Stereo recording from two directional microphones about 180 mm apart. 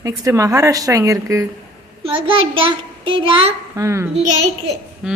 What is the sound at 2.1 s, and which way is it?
Speech, 30° right (ahead or behind).